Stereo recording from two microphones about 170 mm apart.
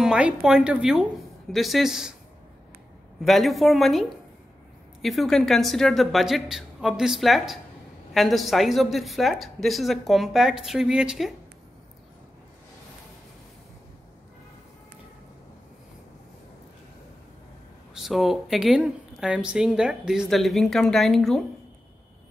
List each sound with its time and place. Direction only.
0.0 s a woman's voice: 5° right (ahead or behind)
3.2 s a woman's voice: centre (ahead or behind)
5.0 s a woman's voice: centre (ahead or behind)
17.9 s a woman's voice: centre (ahead or behind)